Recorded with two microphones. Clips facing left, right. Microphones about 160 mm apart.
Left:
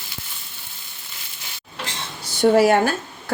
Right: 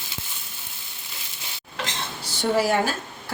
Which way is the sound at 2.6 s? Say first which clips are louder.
Left 4 dB; 60° left (ahead or behind).